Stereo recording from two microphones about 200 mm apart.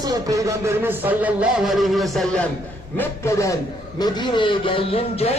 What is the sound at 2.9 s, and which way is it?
A man's voice, 15° left (ahead or behind).